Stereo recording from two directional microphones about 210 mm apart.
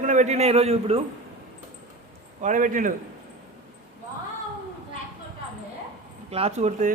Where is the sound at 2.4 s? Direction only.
40° right (ahead or behind).